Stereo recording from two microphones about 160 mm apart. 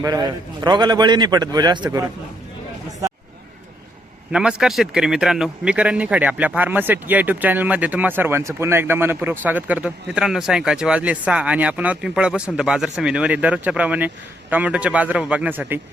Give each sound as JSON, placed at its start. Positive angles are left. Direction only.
{"t": 0.0, "sound": "a man's voice", "side_deg": -25}
{"t": 4.3, "sound": "speech", "side_deg": -5}